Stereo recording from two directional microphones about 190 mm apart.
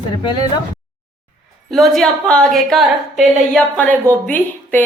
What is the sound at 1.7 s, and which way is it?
A woman's voice, centre (ahead or behind).